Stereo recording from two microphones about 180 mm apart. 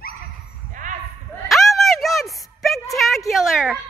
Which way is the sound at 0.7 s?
45° right (ahead or behind).